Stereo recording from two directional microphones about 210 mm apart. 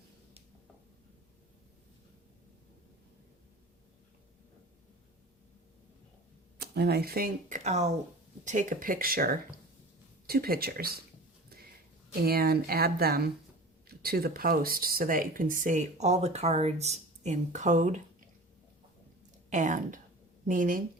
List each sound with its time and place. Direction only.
6.6 s speech: 50° right (ahead or behind)
12.2 s speech: 45° right (ahead or behind)
19.5 s speech: 35° right (ahead or behind)